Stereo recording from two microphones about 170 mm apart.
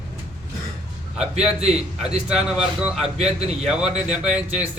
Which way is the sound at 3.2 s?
40° right (ahead or behind).